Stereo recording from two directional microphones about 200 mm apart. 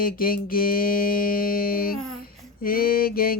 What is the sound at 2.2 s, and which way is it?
Mantra, 45° left (ahead or behind).